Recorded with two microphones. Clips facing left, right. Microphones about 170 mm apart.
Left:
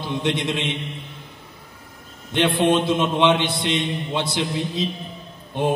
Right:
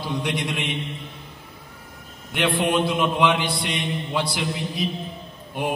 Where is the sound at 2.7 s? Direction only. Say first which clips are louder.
Left 2 dB; 25° left (ahead or behind).